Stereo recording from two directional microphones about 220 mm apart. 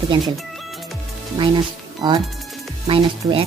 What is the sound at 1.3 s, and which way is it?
Speech, 20° right (ahead or behind).